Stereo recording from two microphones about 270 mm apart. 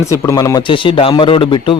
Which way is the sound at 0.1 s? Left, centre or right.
Centre.